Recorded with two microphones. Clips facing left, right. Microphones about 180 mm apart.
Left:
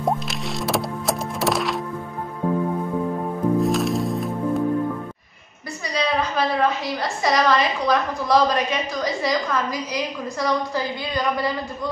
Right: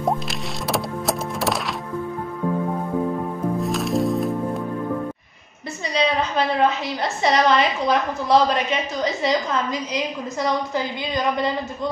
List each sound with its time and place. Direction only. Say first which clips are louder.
0.7 s power windows: right 1 dB; centre (ahead or behind)
3.6 s music: even; centre (ahead or behind)
5.9 s a sound: right 1 dB; 25° right (ahead or behind)
9.0 s a woman's voice: right 2 dB; 25° right (ahead or behind)